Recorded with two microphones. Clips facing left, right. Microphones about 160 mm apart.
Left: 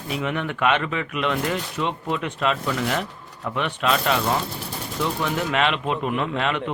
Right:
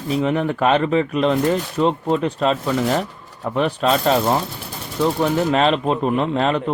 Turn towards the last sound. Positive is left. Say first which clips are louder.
# right 6 dB
turn(degrees=-35)  # may be behind; listen again after turning